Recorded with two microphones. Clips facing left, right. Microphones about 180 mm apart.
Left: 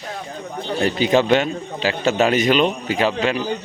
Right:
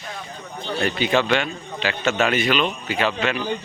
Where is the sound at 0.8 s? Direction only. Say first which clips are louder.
Left 4 dB; 35° left (ahead or behind).